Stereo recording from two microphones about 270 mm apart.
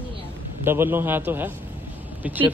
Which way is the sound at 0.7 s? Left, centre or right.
Centre.